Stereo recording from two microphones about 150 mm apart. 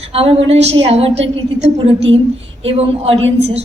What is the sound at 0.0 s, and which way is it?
A woman's voice, 40° right (ahead or behind).